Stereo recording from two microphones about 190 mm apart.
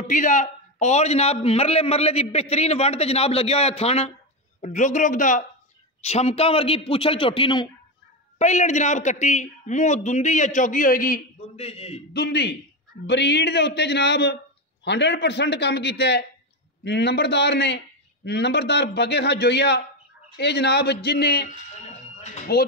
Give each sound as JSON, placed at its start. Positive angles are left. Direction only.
{"t": 0.0, "sound": "a man's voice", "side_deg": 40}
{"t": 8.4, "sound": "a man's voice", "side_deg": 40}
{"t": 11.5, "sound": "a man's voice", "side_deg": 30}
{"t": 12.1, "sound": "a man's voice", "side_deg": 60}
{"t": 22.2, "sound": "music", "side_deg": 35}